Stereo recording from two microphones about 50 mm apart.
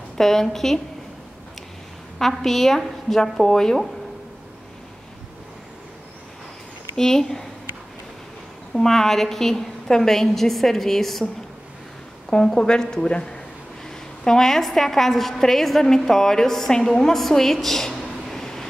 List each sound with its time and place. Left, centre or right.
0.2 s a woman's voice: centre
2.1 s a woman's voice: centre
7.0 s a woman's voice: centre
8.7 s a woman's voice: centre
12.3 s a woman's voice: centre
18.3 s train: centre